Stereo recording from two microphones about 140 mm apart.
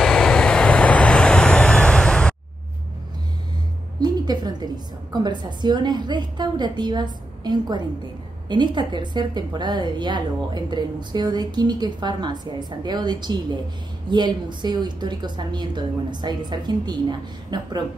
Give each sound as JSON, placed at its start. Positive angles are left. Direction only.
{"t": 0.0, "sound": "vehicle", "side_deg": 5}
{"t": 4.0, "sound": "music", "side_deg": -30}
{"t": 5.1, "sound": "a woman's voice", "side_deg": -30}